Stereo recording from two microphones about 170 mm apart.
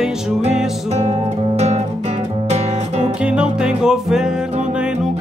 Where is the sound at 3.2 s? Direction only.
5° right (ahead or behind).